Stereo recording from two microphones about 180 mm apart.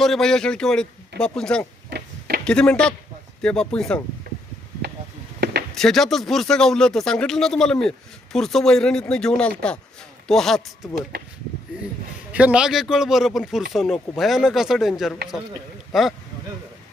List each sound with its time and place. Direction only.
0.0 s speech: centre (ahead or behind)
1.9 s a sound: 60° right (ahead or behind)
2.4 s speech: 5° left (ahead or behind)
5.7 s speech: centre (ahead or behind)
12.3 s speech: 5° right (ahead or behind)